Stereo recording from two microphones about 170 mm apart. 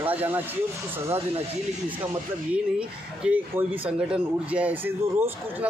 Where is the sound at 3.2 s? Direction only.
10° right (ahead or behind).